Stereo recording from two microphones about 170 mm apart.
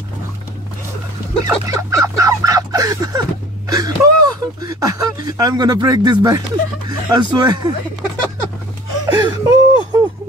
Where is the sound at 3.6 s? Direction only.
20° right (ahead or behind).